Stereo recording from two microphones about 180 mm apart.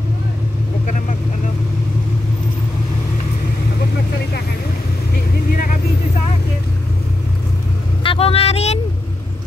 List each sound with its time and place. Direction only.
8.0 s vehicle: 30° left (ahead or behind)